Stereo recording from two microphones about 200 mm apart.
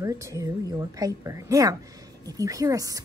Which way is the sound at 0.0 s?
15° right (ahead or behind).